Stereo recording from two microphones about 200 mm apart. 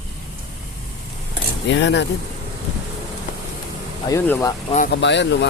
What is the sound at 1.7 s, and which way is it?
Speech, 65° left (ahead or behind).